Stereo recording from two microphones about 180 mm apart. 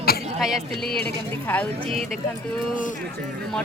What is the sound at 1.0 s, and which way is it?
Speech, 10° left (ahead or behind).